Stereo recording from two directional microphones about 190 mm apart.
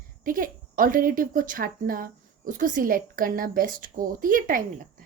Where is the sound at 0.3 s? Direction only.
45° right (ahead or behind).